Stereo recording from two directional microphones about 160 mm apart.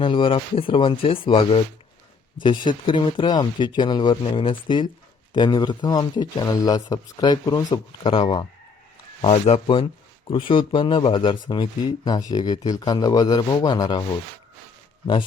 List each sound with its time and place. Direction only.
0.0 s speech: 30° left (ahead or behind)